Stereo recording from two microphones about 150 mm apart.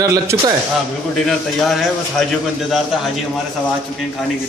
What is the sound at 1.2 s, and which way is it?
Speech, centre (ahead or behind).